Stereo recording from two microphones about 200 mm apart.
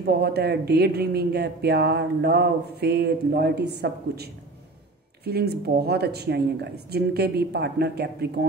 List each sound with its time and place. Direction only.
0.0 s speech: 55° right (ahead or behind)